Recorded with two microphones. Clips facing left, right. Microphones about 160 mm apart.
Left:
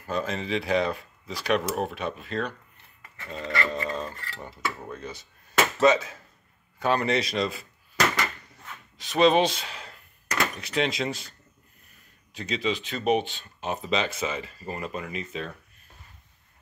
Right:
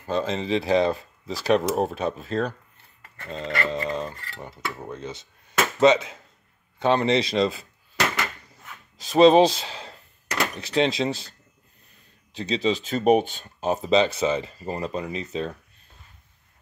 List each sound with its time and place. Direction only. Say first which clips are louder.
0.0 s speech: right 4 dB; 25° right (ahead or behind)
3.3 s cutlery: right 2 dB; 25° right (ahead or behind)
9.0 s speech: right 6 dB; 35° right (ahead or behind)
12.4 s speech: right 4 dB; 30° right (ahead or behind)